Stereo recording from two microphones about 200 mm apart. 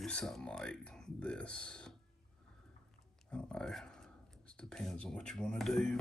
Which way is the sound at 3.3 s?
5° left (ahead or behind).